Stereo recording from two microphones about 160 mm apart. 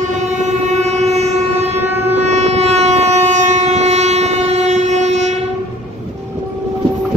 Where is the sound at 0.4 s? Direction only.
45° right (ahead or behind).